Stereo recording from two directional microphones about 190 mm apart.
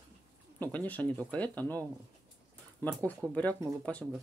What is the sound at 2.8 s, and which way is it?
Speech, 10° left (ahead or behind).